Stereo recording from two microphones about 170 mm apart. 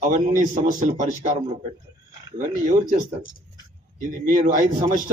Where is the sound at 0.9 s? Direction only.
45° right (ahead or behind).